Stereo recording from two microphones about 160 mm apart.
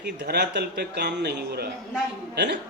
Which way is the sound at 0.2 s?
90° right.